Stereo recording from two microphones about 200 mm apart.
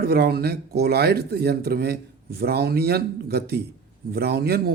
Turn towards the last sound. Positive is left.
turn(degrees=-55)  # may be behind; listen again after turning